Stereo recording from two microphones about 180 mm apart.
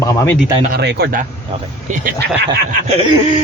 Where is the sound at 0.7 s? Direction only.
65° right (ahead or behind).